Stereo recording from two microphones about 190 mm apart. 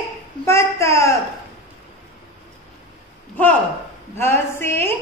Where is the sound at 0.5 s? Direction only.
15° left (ahead or behind).